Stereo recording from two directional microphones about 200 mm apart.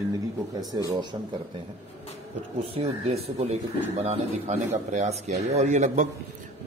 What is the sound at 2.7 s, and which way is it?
A man's voice, 30° right (ahead or behind).